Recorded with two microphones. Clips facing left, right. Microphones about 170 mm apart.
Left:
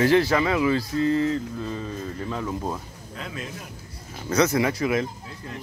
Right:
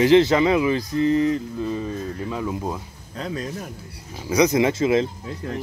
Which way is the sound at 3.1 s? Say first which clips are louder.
Right 6 dB; 35° right (ahead or behind).